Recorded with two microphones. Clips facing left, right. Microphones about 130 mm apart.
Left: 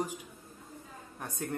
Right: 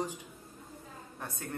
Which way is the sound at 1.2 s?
15° left (ahead or behind).